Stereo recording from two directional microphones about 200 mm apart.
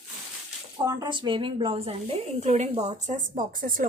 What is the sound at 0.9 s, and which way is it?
A woman's voice, 20° right (ahead or behind).